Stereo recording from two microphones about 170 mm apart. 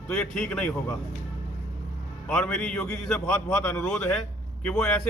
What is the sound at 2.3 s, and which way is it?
Speech, 5° left (ahead or behind).